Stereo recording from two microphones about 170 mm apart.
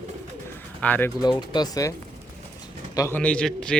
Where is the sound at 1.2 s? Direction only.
25° left (ahead or behind).